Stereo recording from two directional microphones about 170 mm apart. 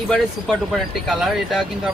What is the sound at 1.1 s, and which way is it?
Speech, centre (ahead or behind).